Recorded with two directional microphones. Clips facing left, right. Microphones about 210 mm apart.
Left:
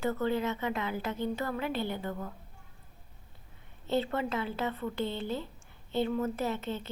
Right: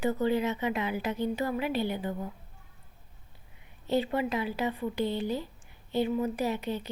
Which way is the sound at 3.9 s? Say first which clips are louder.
Right 2 dB; 15° right (ahead or behind).